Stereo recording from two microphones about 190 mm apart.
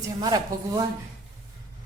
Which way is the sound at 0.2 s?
20° right (ahead or behind).